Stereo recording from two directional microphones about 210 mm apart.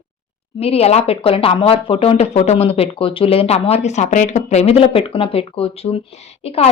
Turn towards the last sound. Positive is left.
turn(degrees=30)  # may be behind; listen again after turning